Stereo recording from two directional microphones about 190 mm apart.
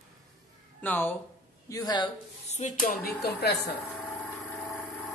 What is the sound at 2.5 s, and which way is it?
Speech, 40° left (ahead or behind).